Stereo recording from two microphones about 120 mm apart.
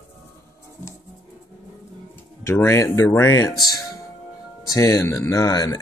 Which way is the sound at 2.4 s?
20° left (ahead or behind).